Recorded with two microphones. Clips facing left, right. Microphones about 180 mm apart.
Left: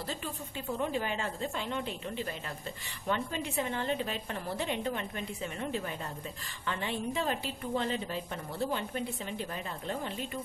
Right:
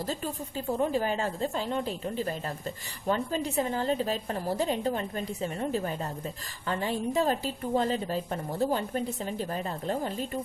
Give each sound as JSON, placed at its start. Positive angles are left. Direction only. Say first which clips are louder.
{"t": 0.0, "sound": "a woman's voice", "louder": "right 5 dB", "side_deg": -40}